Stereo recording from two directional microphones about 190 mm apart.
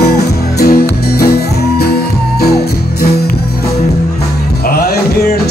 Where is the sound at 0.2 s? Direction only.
55° left (ahead or behind).